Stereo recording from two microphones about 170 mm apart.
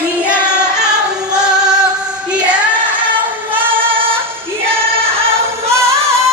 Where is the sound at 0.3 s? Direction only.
10° left (ahead or behind).